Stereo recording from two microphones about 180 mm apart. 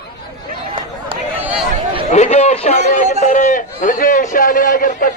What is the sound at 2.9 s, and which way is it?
A man's voice, 45° left (ahead or behind).